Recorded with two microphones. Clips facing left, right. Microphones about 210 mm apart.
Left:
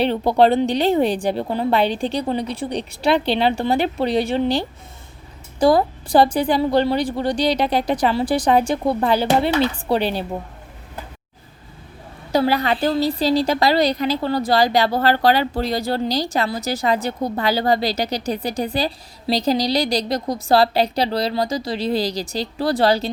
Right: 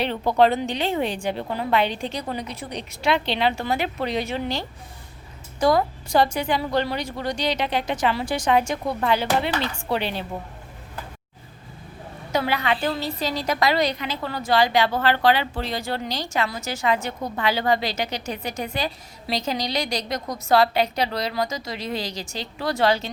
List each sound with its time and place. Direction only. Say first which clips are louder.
0.0 s a woman's voice: left 4 dB; 35° left (ahead or behind)
12.3 s a woman's voice: left 5 dB; 35° left (ahead or behind)